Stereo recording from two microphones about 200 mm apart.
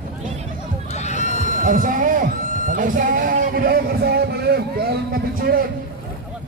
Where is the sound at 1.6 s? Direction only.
40° right (ahead or behind).